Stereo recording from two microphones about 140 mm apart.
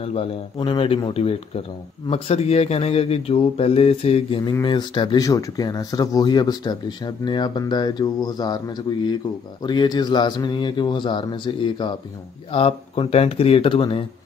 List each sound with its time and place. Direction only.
0.0 s speech: 45° left (ahead or behind)
0.6 s speech: 35° left (ahead or behind)
4.5 s speech: 30° left (ahead or behind)